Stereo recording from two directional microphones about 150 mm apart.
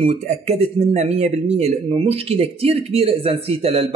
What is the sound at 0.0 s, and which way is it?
Speech, 45° right (ahead or behind).